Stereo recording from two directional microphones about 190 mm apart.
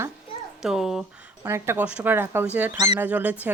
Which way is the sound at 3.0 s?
10° right (ahead or behind).